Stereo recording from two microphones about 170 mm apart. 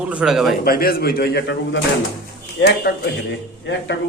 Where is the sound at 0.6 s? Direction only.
65° left (ahead or behind).